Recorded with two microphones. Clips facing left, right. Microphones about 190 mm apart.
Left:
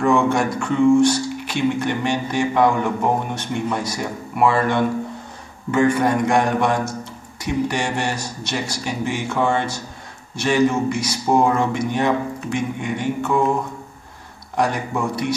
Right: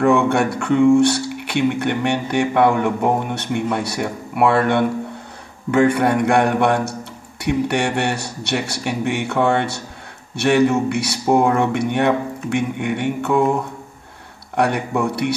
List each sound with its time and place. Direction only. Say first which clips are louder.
0.0 s speech: right 2 dB; 65° right (ahead or behind)
14.6 s speech: right 3 dB; 65° right (ahead or behind)